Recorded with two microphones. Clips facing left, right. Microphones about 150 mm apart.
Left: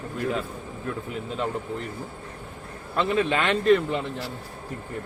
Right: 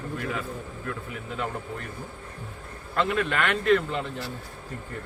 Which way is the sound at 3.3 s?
20° left (ahead or behind).